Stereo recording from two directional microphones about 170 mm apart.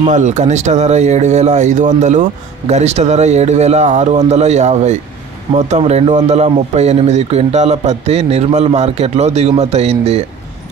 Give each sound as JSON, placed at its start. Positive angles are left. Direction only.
{"t": 0.0, "sound": "speech", "side_deg": -45}